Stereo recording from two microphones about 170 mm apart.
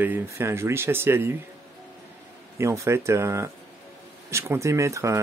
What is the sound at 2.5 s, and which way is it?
Speech, 15° right (ahead or behind).